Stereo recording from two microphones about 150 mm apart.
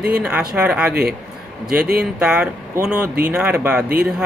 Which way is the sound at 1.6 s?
90° right.